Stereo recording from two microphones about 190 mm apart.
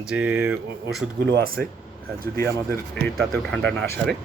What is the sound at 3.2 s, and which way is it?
Speech, centre (ahead or behind).